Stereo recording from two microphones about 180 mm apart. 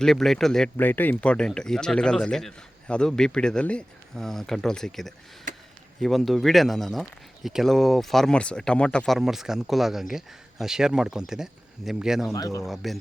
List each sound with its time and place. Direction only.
0.0 s speech: centre (ahead or behind)
12.3 s speech: 15° left (ahead or behind)
12.6 s speech: centre (ahead or behind)